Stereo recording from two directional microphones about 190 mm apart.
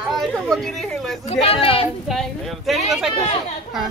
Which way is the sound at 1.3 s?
30° left (ahead or behind).